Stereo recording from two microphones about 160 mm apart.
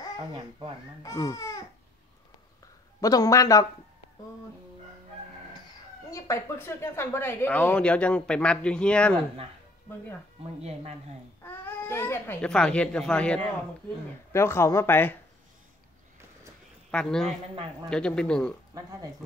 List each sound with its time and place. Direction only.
0.3 s speech: 30° right (ahead or behind)
1.0 s a man's voice: 20° left (ahead or behind)
3.0 s a man's voice: 20° left (ahead or behind)
6.1 s speech: 20° left (ahead or behind)
10.6 s speech: 40° right (ahead or behind)
11.4 s speech: 15° left (ahead or behind)
14.3 s speech: 15° left (ahead or behind)
16.9 s speech: 5° left (ahead or behind)